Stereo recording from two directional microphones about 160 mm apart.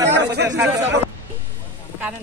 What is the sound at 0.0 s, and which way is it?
Chatter, 90° right.